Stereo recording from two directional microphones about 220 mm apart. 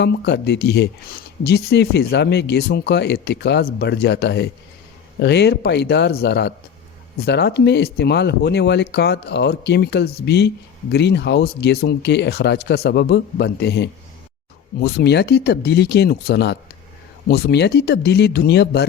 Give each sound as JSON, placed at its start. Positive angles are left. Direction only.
{"t": 0.0, "sound": "speech", "side_deg": 50}